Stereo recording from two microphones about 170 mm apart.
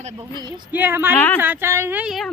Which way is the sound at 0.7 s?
10° right (ahead or behind).